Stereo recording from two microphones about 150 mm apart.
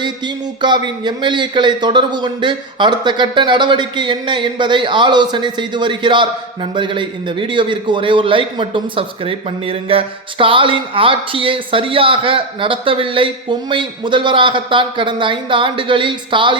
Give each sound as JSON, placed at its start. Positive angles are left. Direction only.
{"t": 0.6, "sound": "a man's voice", "side_deg": -30}